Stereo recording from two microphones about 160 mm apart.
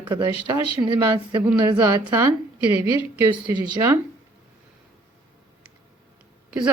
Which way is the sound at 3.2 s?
25° right (ahead or behind).